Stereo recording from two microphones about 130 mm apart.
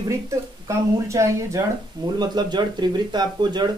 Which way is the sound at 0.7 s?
25° right (ahead or behind).